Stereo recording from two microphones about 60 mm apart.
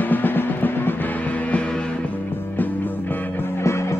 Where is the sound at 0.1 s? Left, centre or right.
Left.